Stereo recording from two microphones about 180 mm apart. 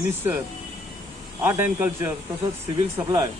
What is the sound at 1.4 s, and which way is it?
Speech, 10° right (ahead or behind).